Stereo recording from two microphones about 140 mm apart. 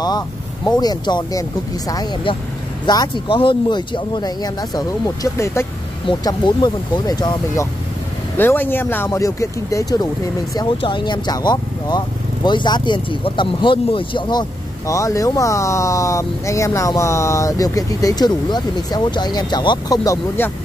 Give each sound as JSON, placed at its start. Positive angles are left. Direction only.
{"t": 0.7, "sound": "speech", "side_deg": 30}
{"t": 2.9, "sound": "speech", "side_deg": 30}
{"t": 6.0, "sound": "speech", "side_deg": 30}
{"t": 8.4, "sound": "speech", "side_deg": 15}
{"t": 10.8, "sound": "speech", "side_deg": 35}
{"t": 14.9, "sound": "speech", "side_deg": 25}
{"t": 20.4, "sound": "speech", "side_deg": 15}